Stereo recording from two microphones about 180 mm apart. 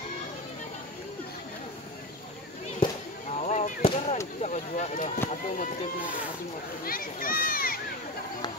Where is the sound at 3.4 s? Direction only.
45° left (ahead or behind).